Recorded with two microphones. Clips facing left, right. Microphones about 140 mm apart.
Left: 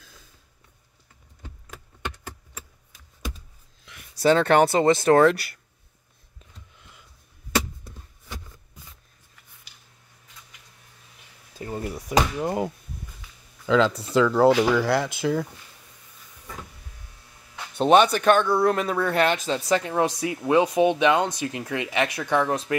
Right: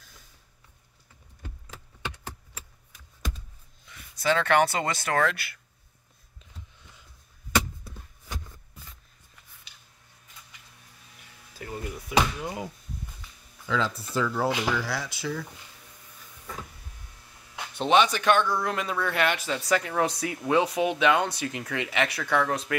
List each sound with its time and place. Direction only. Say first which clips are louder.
4.2 s speech: left 5 dB; 35° left (ahead or behind)
11.5 s door: left 5 dB; 30° left (ahead or behind); by 12.7 s 55° left (ahead or behind)
13.7 s speech: left 8 dB; 85° left; by 15.4 s 55° left (ahead or behind)
17.7 s speech: left 5 dB; 40° left (ahead or behind); by 22.8 s 20° left (ahead or behind)